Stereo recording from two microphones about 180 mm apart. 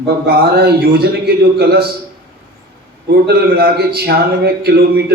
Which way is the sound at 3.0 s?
60° right (ahead or behind).